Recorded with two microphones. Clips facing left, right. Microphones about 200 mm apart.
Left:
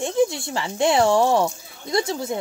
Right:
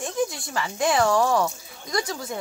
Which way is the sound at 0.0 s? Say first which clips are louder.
Left 6 dB; 25° left (ahead or behind).